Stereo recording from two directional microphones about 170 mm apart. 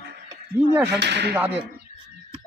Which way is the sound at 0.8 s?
85° right.